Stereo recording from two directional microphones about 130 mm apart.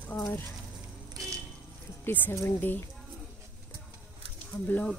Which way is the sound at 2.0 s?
15° left (ahead or behind).